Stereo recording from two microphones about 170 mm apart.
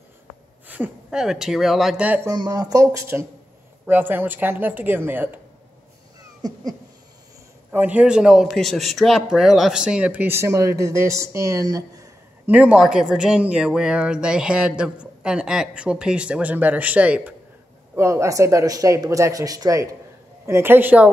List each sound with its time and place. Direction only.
0.7 s speech: 10° right (ahead or behind)
2.3 s speech: 25° right (ahead or behind)
6.4 s a sound: 20° right (ahead or behind)
7.7 s speech: 10° right (ahead or behind)
12.4 s speech: 10° right (ahead or behind)